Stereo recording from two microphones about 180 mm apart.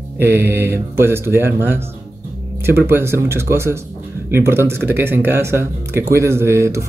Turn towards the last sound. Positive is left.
turn(degrees=-15)  # may be behind; listen again after turning